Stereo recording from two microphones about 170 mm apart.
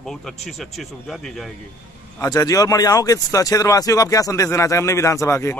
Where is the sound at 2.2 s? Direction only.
20° left (ahead or behind).